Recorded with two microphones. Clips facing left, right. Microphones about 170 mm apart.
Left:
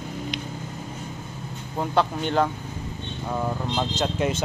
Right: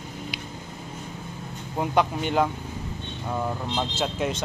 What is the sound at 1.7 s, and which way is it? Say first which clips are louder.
Speech: even; 10° right (ahead or behind).